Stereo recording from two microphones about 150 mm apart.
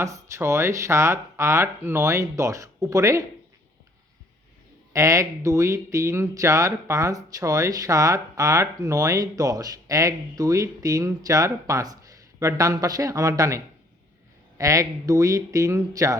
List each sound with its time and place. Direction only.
0.0 s speech: 20° right (ahead or behind)
4.9 s speech: 20° right (ahead or behind)
14.6 s speech: 20° right (ahead or behind)